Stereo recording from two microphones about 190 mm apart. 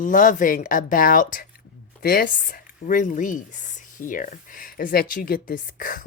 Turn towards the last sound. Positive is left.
turn(degrees=45)  # may be behind; listen again after turning